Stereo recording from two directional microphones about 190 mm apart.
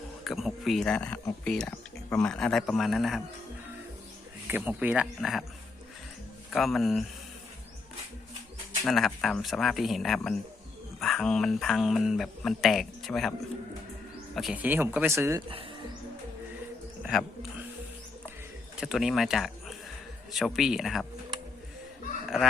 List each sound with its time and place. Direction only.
0.3 s speech: centre (ahead or behind)
4.4 s speech: 10° right (ahead or behind)
6.5 s speech: centre (ahead or behind)
8.8 s speech: centre (ahead or behind)
14.3 s speech: 5° right (ahead or behind)
17.0 s a sound: centre (ahead or behind)
18.8 s speech: centre (ahead or behind)